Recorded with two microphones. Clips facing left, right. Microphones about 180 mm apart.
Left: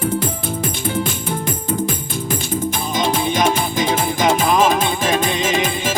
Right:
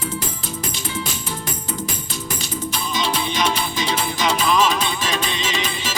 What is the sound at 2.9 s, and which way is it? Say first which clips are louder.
Music: left 5 dB; 50° left (ahead or behind).